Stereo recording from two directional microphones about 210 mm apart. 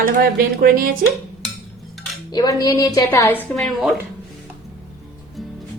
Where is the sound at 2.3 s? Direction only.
15° left (ahead or behind).